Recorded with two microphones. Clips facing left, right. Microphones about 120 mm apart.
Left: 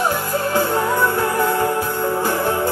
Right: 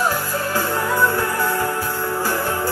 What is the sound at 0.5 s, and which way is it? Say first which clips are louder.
Music: left 4 dB; 20° left (ahead or behind).